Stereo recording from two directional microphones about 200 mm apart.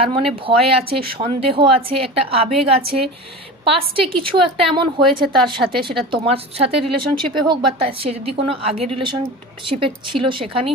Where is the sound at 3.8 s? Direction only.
25° right (ahead or behind).